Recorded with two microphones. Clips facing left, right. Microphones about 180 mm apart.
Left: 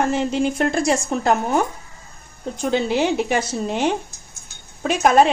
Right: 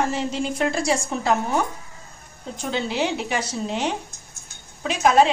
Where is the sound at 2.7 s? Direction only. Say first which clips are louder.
Left 5 dB; 50° left (ahead or behind).